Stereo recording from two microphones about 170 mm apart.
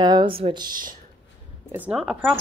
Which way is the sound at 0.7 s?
55° right (ahead or behind).